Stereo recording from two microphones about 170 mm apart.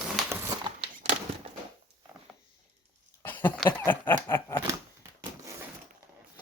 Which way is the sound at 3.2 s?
10° left (ahead or behind).